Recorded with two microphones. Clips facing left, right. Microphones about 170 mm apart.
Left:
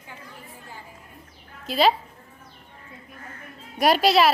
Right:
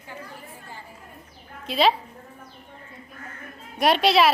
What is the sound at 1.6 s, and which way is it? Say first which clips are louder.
Speech: left 1 dB; centre (ahead or behind).